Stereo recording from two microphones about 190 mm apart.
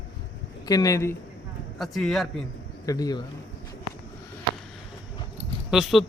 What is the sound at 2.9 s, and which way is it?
Speech, 20° left (ahead or behind).